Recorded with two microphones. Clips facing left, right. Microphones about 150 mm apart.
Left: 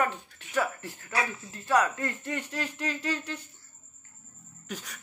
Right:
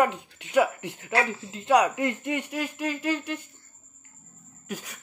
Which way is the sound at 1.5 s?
20° right (ahead or behind).